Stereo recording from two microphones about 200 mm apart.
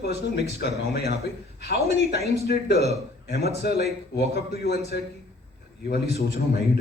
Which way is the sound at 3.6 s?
55° left (ahead or behind).